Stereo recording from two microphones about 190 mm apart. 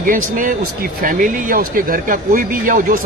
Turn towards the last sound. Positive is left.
turn(degrees=-45)  # may be behind; listen again after turning